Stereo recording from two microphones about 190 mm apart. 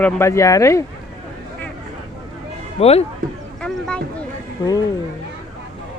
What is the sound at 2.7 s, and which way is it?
Speech, 35° left (ahead or behind).